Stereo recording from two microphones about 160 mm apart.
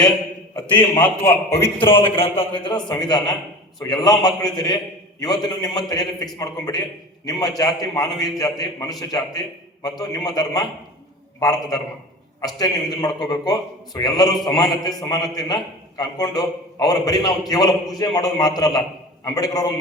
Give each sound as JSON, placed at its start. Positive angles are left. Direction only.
{"t": 0.8, "sound": "a man's voice", "side_deg": 15}
{"t": 1.8, "sound": "a man's voice", "side_deg": 35}